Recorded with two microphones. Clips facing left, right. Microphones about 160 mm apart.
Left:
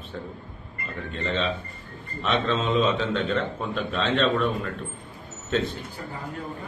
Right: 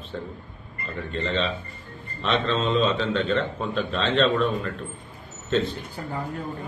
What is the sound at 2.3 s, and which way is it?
A man's voice, 10° left (ahead or behind).